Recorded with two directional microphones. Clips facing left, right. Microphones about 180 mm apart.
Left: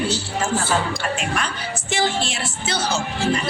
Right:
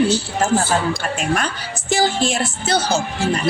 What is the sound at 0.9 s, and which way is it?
Speech, 45° right (ahead or behind).